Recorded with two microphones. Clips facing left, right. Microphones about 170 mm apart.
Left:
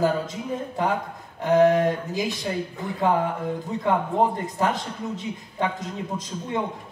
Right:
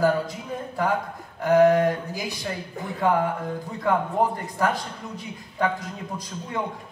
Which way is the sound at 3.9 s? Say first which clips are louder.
Even; 20° left (ahead or behind).